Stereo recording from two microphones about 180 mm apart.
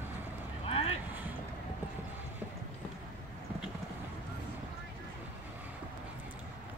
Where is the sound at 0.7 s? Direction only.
30° left (ahead or behind).